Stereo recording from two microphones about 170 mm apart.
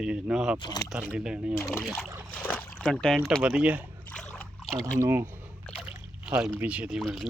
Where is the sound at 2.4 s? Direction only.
10° left (ahead or behind).